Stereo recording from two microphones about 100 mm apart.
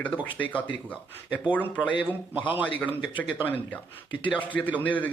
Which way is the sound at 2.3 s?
15° right (ahead or behind).